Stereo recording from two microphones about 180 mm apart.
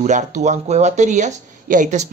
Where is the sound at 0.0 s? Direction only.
40° right (ahead or behind).